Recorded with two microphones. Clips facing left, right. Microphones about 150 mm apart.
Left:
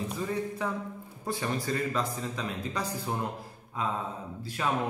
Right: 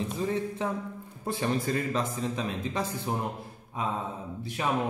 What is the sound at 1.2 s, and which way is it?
A man's voice, 25° right (ahead or behind).